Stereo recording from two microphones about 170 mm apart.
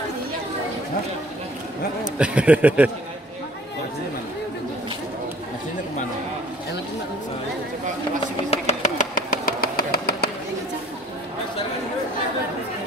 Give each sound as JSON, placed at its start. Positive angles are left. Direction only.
{"t": 2.1, "sound": "speech", "side_deg": -5}
{"t": 8.5, "sound": "engine", "side_deg": 40}